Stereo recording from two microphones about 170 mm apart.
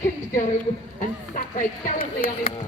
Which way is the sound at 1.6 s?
55° left (ahead or behind).